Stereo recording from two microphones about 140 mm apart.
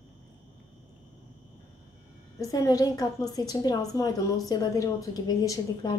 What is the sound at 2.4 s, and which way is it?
A woman's voice, 25° left (ahead or behind).